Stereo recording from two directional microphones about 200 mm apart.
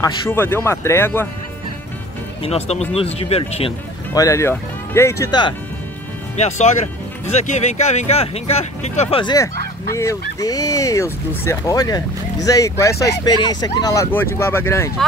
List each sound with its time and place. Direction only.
0.0 s speech: 10° left (ahead or behind)
2.4 s speech: 30° left (ahead or behind)
4.1 s speech: 15° left (ahead or behind)
6.3 s speech: 35° left (ahead or behind); by 14.9 s 10° left (ahead or behind)